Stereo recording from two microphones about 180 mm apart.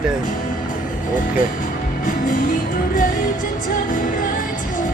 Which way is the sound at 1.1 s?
50° left (ahead or behind).